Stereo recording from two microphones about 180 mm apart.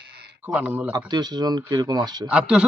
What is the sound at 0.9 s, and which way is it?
Speech, 25° right (ahead or behind).